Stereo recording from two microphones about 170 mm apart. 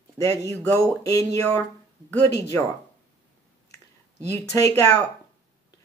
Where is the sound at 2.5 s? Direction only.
15° left (ahead or behind).